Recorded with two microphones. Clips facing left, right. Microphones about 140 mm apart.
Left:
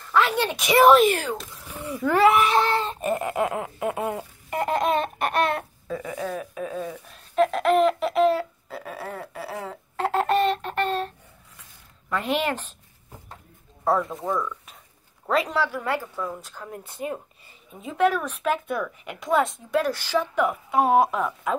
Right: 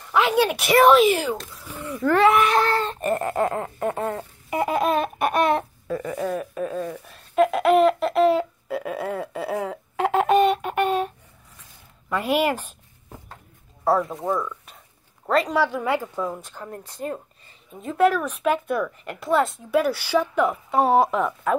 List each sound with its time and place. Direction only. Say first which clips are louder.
0.0 s speech: right 3 dB; 15° right (ahead or behind); by 2.2 s 5° left (ahead or behind)
2.3 s speech: right 1 dB; 30° left (ahead or behind)
2.7 s speech: right 2 dB; 5° left (ahead or behind)
4.5 s speech: right 1 dB; 10° right (ahead or behind)
5.2 s a sound: right 3 dB; 20° right (ahead or behind)
5.9 s speech: right 3 dB; centre (ahead or behind)
13.8 s speech: right 2 dB; centre (ahead or behind)
15.2 s speech: right 2 dB; centre (ahead or behind)
15.5 s speech: right 3 dB; 15° right (ahead or behind)
16.6 s speech: right 1 dB; centre (ahead or behind)
20.3 s speech: right 1 dB; 10° left (ahead or behind)